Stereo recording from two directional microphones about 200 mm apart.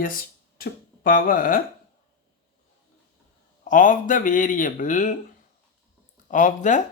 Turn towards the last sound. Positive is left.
turn(degrees=40)  # may be behind; listen again after turning